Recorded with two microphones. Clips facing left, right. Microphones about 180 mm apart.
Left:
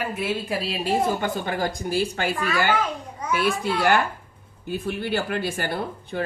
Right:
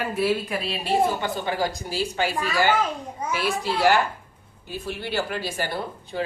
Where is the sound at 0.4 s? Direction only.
35° left (ahead or behind).